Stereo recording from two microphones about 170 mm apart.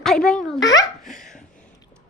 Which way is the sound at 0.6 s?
20° left (ahead or behind).